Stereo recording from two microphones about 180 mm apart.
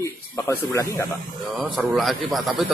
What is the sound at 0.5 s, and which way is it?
Speech, 15° left (ahead or behind).